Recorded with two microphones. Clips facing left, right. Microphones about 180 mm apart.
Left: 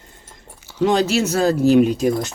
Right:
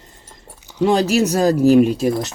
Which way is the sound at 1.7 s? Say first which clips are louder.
Even; 5° right (ahead or behind).